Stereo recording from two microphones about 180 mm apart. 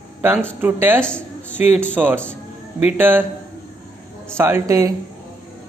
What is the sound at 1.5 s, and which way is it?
Speech, 10° right (ahead or behind).